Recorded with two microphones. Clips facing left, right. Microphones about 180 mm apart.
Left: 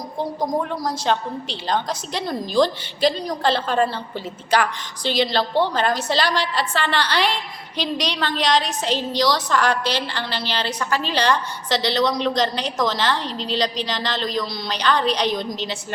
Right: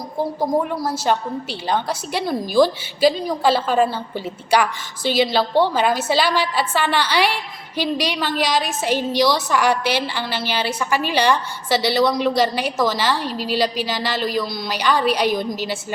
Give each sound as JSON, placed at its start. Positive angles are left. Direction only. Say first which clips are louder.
{"t": 0.2, "sound": "a woman's voice", "louder": "right 3 dB", "side_deg": -5}